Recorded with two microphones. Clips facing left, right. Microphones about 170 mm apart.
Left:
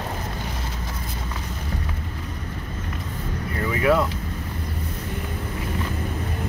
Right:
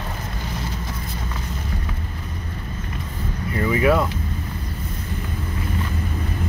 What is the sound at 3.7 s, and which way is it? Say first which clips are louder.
Speech: right 2 dB; 5° right (ahead or behind).